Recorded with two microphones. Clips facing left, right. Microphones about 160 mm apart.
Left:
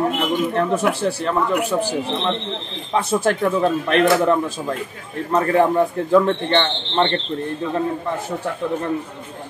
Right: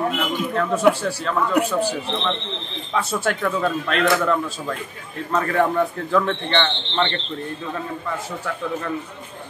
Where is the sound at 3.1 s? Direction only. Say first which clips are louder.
Left 6 dB; 20° left (ahead or behind).